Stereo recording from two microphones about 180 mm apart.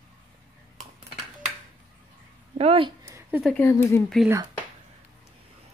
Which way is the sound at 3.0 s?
15° right (ahead or behind).